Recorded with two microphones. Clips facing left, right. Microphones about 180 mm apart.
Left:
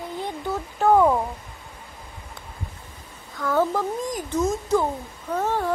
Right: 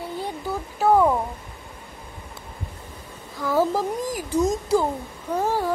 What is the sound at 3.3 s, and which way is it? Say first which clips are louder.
Speech: right 1 dB; 5° right (ahead or behind).